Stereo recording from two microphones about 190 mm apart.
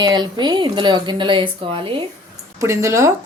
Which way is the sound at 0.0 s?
20° right (ahead or behind).